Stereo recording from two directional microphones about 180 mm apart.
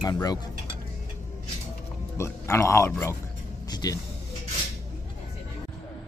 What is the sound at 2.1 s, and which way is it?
Speech, 15° left (ahead or behind).